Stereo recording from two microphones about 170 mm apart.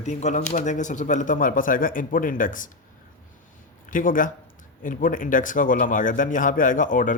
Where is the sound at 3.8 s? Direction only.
50° left (ahead or behind).